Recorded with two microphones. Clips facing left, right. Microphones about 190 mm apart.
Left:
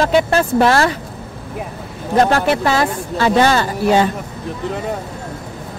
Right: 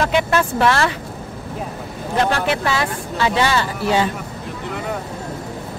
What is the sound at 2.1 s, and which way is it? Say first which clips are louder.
Speech: left 5 dB; 40° left (ahead or behind).